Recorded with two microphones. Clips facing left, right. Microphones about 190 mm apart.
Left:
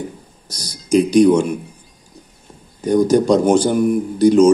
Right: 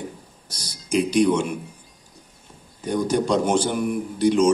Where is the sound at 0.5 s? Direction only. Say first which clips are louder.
Left 9 dB; 40° left (ahead or behind).